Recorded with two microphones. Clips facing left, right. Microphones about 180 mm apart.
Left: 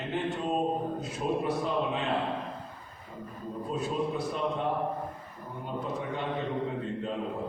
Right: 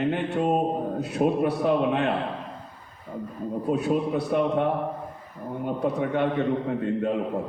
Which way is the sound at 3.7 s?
65° right (ahead or behind).